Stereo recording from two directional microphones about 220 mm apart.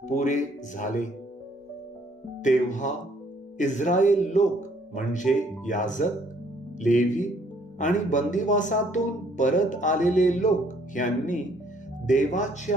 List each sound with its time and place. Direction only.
0.1 s speech: 35° left (ahead or behind)
2.4 s speech: 35° left (ahead or behind)